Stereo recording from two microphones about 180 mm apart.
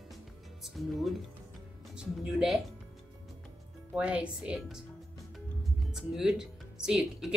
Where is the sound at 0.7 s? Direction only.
Centre (ahead or behind).